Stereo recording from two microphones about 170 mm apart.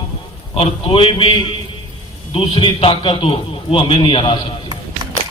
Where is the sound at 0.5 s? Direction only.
35° left (ahead or behind).